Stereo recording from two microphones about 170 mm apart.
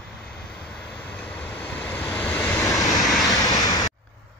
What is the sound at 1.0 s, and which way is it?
Vehicle, 10° left (ahead or behind).